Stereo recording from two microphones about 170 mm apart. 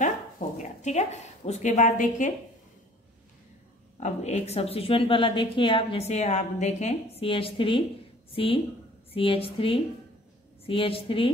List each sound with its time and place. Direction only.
0.6 s a woman's voice: 45° left (ahead or behind)
4.0 s a woman's voice: 40° left (ahead or behind)